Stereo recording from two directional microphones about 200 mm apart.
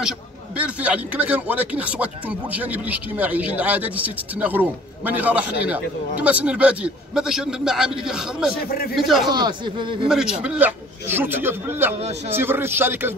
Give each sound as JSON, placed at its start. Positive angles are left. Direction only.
{"t": 0.6, "sound": "a man's voice", "side_deg": -5}
{"t": 9.3, "sound": "a man's voice", "side_deg": -20}
{"t": 10.0, "sound": "speech", "side_deg": -5}
{"t": 12.0, "sound": "a man's voice", "side_deg": -30}
{"t": 12.4, "sound": "speech", "side_deg": -10}